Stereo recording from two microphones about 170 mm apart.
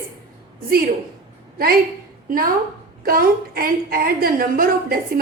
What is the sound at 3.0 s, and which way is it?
A woman's voice, 60° right (ahead or behind).